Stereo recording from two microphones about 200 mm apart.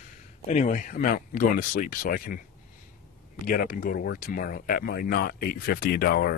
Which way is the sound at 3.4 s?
45° left (ahead or behind).